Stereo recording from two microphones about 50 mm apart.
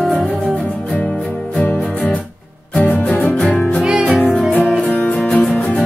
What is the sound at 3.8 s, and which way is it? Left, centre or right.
Music, centre.